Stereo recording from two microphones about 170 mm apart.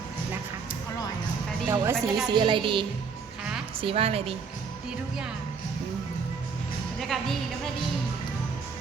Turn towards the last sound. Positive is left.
turn(degrees=0)  # may be behind; listen again after turning